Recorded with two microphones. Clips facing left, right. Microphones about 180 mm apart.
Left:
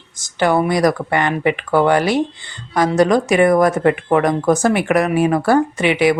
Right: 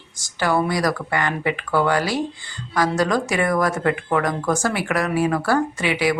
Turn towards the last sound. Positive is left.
turn(degrees=20)  # may be behind; listen again after turning